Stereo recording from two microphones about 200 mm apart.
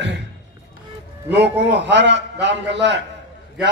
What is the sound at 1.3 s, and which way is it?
A man's voice, 60° right (ahead or behind).